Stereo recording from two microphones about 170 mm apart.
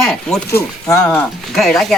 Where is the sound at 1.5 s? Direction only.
Centre (ahead or behind).